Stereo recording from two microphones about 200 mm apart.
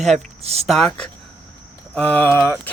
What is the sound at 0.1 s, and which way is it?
Speech, 30° right (ahead or behind).